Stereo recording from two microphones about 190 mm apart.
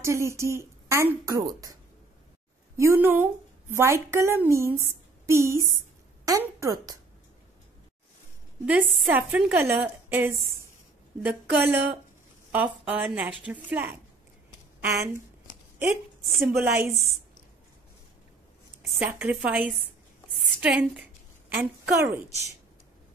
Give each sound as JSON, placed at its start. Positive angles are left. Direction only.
{"t": 0.0, "sound": "speech", "side_deg": -15}
{"t": 2.8, "sound": "a woman's voice", "side_deg": -10}
{"t": 8.6, "sound": "speech", "side_deg": -10}
{"t": 15.9, "sound": "a woman's voice", "side_deg": 0}
{"t": 16.5, "sound": "speech", "side_deg": -15}
{"t": 18.8, "sound": "a woman's voice", "side_deg": -5}